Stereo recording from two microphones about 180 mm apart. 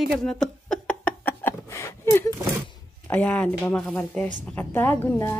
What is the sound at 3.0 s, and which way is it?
Speech, 10° left (ahead or behind).